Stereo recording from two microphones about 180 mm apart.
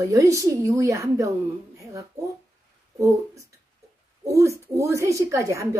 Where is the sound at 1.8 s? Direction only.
15° right (ahead or behind).